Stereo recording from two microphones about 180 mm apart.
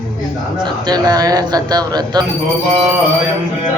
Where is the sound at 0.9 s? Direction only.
20° right (ahead or behind).